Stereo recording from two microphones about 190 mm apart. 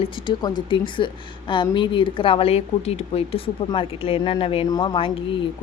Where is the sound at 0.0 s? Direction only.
25° left (ahead or behind).